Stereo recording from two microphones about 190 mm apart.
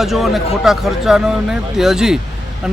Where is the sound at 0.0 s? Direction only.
Centre (ahead or behind).